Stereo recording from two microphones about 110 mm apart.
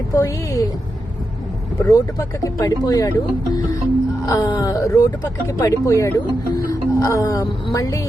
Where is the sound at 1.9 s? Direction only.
30° left (ahead or behind).